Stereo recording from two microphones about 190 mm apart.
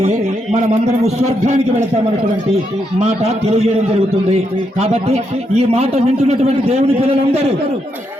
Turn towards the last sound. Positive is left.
turn(degrees=-35)  # may be behind; listen again after turning